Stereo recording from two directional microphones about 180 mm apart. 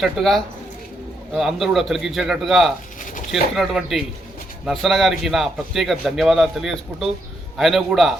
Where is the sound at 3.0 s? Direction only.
45° left (ahead or behind).